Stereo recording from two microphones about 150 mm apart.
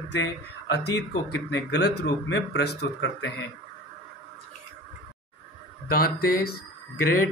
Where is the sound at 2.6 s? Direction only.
90° left.